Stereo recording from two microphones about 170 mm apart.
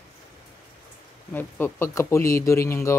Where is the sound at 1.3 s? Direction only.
10° left (ahead or behind).